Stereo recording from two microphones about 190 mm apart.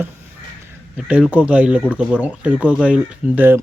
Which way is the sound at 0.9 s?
5° right (ahead or behind).